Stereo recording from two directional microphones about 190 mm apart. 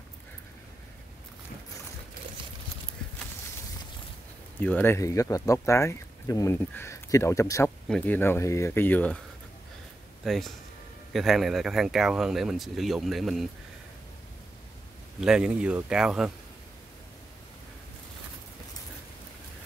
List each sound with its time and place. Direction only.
4.6 s speech: 10° left (ahead or behind)
10.2 s speech: centre (ahead or behind)
15.1 s speech: 5° right (ahead or behind)